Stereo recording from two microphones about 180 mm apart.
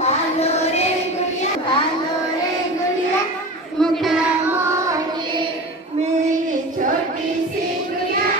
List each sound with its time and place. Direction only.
0.0 s child singing: 35° left (ahead or behind)
3.8 s a sound: centre (ahead or behind)
4.5 s carnatic music: 15° right (ahead or behind)